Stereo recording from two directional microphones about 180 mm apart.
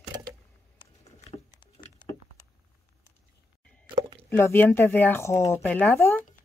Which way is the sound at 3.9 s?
30° right (ahead or behind).